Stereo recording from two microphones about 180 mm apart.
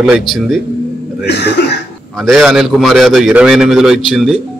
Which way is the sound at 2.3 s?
Centre (ahead or behind).